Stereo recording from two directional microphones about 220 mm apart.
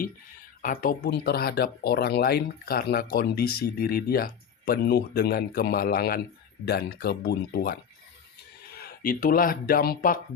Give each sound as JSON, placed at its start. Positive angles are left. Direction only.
{"t": 0.6, "sound": "speech", "side_deg": 40}